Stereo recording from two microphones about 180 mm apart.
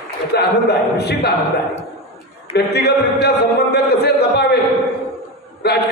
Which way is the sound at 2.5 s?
65° left (ahead or behind).